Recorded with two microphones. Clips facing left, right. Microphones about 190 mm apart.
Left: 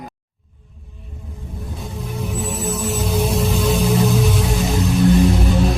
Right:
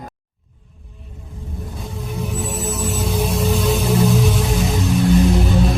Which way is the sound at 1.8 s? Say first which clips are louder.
Even; centre (ahead or behind).